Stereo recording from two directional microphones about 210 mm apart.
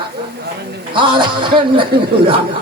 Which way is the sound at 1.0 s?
25° right (ahead or behind).